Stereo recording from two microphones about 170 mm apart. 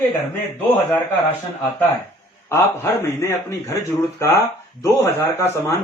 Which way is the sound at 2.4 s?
15° left (ahead or behind).